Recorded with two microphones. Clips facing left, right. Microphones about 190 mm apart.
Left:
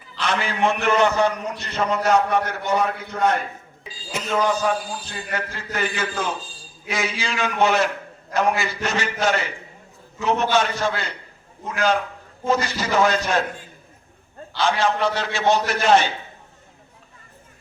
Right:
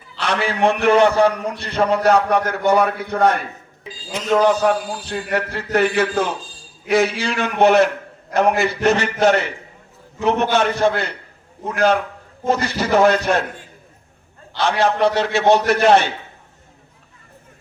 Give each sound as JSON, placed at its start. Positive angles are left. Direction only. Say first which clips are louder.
{"t": 0.2, "sound": "a man's voice", "louder": "right 3 dB", "side_deg": -60}
{"t": 4.4, "sound": "a man's voice", "louder": "right 5 dB", "side_deg": -65}